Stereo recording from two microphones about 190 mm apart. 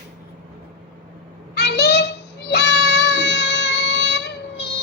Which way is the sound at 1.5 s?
60° left (ahead or behind).